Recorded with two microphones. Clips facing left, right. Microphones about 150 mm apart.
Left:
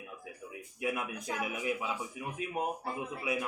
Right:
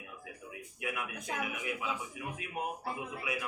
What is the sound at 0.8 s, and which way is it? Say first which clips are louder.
A man's voice: left 4 dB; 30° left (ahead or behind).